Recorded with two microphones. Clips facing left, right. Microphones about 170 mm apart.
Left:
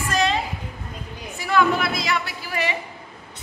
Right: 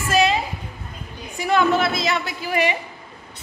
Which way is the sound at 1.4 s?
25° right (ahead or behind).